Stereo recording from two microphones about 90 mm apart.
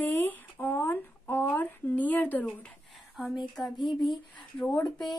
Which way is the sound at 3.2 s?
Centre (ahead or behind).